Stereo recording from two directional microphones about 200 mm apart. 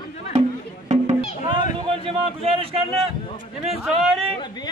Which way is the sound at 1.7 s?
25° right (ahead or behind).